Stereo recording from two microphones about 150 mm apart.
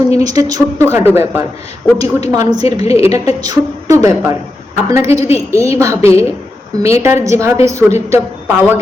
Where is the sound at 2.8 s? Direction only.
45° left (ahead or behind).